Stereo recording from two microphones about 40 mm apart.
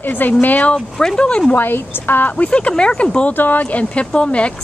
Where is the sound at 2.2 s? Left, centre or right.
Left.